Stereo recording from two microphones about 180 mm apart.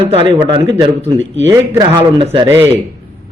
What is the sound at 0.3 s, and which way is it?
A man's voice, 25° right (ahead or behind).